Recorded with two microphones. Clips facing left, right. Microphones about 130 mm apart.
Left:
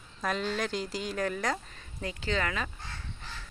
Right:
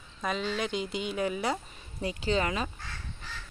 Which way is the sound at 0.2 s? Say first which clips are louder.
Even; centre (ahead or behind).